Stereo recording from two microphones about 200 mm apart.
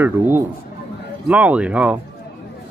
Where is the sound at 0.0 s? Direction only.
10° right (ahead or behind).